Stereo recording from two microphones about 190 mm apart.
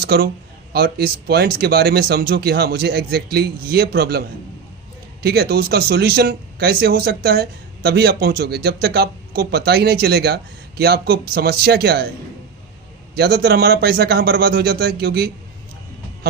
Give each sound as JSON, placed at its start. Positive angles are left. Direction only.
{"t": 0.0, "sound": "speech", "side_deg": -55}
{"t": 13.1, "sound": "speech", "side_deg": -55}